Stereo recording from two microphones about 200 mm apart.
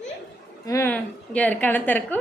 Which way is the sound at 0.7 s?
10° left (ahead or behind).